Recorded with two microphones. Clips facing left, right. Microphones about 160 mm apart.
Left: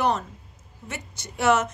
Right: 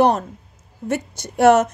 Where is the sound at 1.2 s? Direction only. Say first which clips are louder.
Right 8 dB; 45° right (ahead or behind).